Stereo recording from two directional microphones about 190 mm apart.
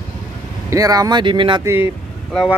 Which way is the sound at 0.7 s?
20° right (ahead or behind).